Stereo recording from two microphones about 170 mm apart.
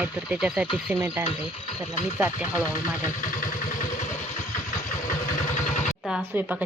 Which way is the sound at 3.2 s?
50° left (ahead or behind).